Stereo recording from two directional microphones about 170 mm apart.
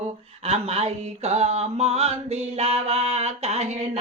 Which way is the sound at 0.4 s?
35° right (ahead or behind).